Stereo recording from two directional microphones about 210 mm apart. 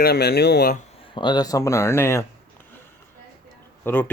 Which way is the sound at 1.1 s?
20° left (ahead or behind).